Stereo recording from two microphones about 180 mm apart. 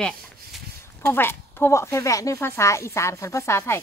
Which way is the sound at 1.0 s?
10° left (ahead or behind).